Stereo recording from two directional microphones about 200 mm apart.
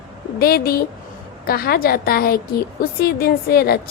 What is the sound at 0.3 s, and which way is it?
A woman's voice, 50° left (ahead or behind).